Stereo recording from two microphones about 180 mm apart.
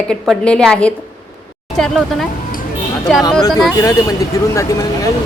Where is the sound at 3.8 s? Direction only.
20° left (ahead or behind).